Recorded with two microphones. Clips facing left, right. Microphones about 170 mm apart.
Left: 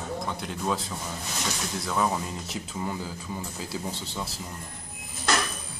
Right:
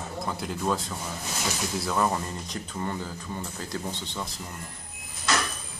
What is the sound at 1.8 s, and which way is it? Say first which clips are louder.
A man's voice: even; centre (ahead or behind).